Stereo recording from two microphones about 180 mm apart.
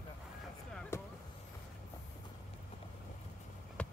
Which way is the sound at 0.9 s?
15° left (ahead or behind).